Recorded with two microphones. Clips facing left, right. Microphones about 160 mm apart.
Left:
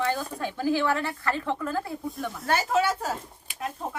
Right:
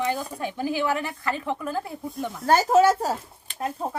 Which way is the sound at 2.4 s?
40° right (ahead or behind).